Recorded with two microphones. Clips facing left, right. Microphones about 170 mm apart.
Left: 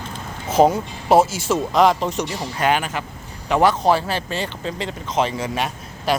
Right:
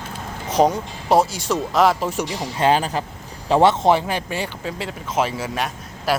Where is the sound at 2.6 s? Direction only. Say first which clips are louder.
Right 2 dB; 30° right (ahead or behind); by 6.2 s 5° right (ahead or behind).